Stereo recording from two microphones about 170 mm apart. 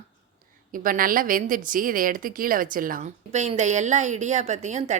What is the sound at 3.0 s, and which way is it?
A woman's voice, 40° right (ahead or behind).